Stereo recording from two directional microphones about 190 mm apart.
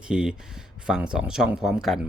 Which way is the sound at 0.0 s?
5° right (ahead or behind).